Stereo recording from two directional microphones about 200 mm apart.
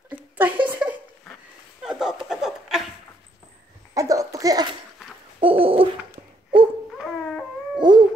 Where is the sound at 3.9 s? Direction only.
15° right (ahead or behind).